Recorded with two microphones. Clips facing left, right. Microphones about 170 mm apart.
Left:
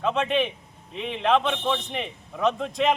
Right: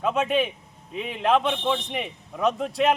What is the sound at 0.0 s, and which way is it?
A man's voice, 5° right (ahead or behind).